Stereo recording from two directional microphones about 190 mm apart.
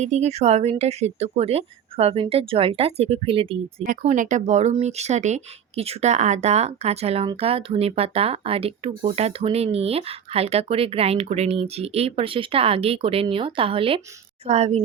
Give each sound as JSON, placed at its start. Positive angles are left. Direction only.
{"t": 0.0, "sound": "speech", "side_deg": -35}
{"t": 4.0, "sound": "speech", "side_deg": -40}